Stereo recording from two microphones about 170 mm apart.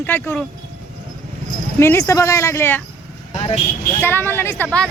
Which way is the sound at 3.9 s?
15° left (ahead or behind).